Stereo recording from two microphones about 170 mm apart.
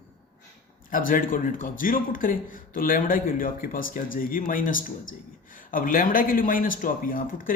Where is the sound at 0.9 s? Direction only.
55° left (ahead or behind).